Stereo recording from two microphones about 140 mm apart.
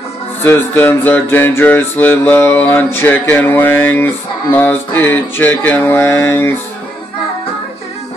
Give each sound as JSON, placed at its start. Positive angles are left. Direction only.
{"t": 0.4, "sound": "music", "side_deg": 15}